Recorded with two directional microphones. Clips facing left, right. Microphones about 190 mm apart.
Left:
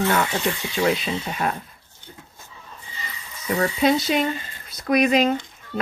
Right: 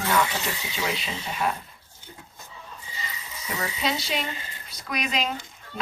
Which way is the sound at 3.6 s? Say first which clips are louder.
Left 9 dB; 50° left (ahead or behind).